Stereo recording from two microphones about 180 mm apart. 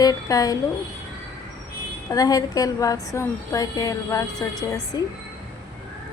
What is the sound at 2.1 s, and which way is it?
A woman's voice, 20° left (ahead or behind).